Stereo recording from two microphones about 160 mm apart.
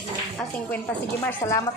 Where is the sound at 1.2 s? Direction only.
15° left (ahead or behind).